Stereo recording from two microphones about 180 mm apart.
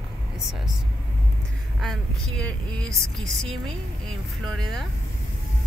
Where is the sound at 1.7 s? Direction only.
5° left (ahead or behind).